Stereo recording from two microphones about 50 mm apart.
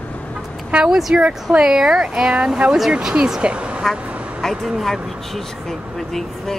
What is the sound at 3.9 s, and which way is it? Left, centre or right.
Vehicle, right.